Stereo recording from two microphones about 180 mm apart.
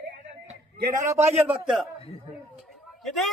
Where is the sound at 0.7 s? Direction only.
55° right (ahead or behind).